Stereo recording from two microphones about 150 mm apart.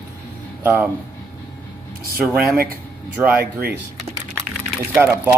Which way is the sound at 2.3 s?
10° right (ahead or behind).